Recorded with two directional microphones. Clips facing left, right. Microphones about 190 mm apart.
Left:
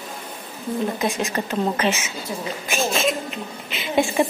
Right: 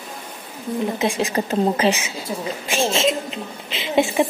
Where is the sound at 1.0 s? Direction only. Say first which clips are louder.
Right 3 dB; 30° right (ahead or behind).